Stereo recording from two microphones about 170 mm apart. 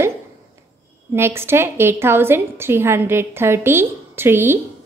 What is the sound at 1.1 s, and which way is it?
A woman's voice, 15° right (ahead or behind).